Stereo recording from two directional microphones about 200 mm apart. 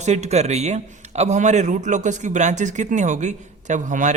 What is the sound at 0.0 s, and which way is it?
A man's voice, 35° right (ahead or behind).